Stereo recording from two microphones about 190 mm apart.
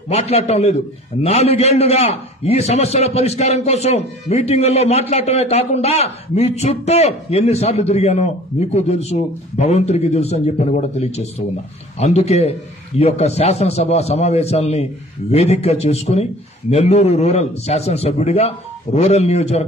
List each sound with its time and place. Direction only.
0.1 s a man's voice: 35° left (ahead or behind)